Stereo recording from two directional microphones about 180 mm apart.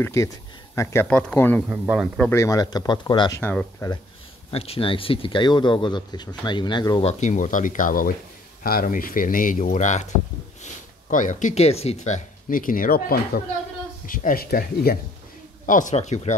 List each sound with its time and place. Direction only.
0.0 s speech: 15° left (ahead or behind)
1.7 s speech: 5° right (ahead or behind)
2.1 s speech: 10° left (ahead or behind)
4.5 s speech: 30° left (ahead or behind)
7.1 s speech: 40° left (ahead or behind); by 15.0 s 55° left (ahead or behind)
15.6 s speech: 45° left (ahead or behind)